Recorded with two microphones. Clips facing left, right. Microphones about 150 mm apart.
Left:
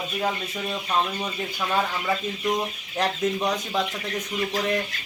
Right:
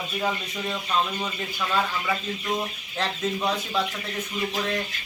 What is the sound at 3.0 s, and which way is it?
Speech, 20° left (ahead or behind).